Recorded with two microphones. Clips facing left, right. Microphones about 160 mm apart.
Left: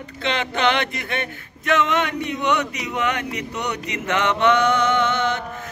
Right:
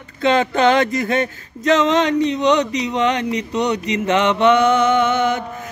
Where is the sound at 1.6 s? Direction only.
20° right (ahead or behind).